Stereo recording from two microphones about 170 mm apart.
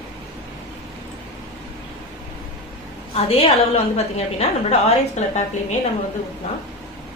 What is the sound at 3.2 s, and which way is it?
A woman's voice, 35° left (ahead or behind).